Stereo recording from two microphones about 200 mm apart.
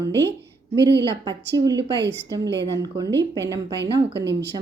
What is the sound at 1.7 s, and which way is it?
A woman's voice, 60° right (ahead or behind).